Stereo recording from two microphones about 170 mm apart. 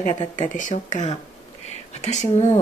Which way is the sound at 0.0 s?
45° left (ahead or behind).